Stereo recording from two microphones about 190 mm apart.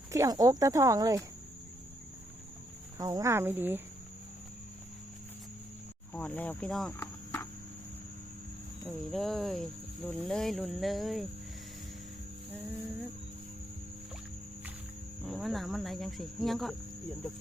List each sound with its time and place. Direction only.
0.1 s speech: 20° right (ahead or behind)
3.0 s speech: 20° right (ahead or behind)
6.1 s speech: 10° left (ahead or behind)
7.0 s cricket: 15° left (ahead or behind)
8.9 s speech: centre (ahead or behind)
15.2 s speech: centre (ahead or behind)